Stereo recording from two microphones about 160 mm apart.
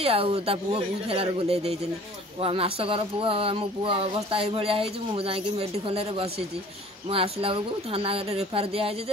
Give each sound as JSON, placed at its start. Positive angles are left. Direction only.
{"t": 0.0, "sound": "speech", "side_deg": -40}